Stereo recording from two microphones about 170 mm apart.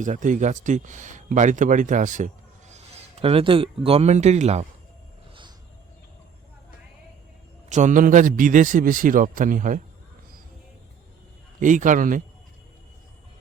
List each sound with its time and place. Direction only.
0.0 s speech: 50° right (ahead or behind)
5.3 s music: 30° right (ahead or behind)
7.7 s a man's voice: 45° right (ahead or behind)
11.6 s a man's voice: 50° right (ahead or behind)